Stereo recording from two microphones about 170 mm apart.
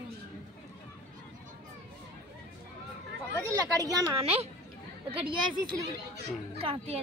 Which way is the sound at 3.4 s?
20° right (ahead or behind).